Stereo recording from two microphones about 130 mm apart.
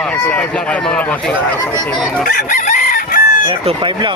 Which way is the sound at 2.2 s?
85° left.